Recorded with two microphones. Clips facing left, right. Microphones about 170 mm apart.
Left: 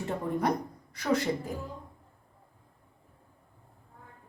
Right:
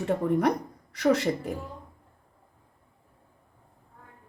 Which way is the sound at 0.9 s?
75° right (ahead or behind).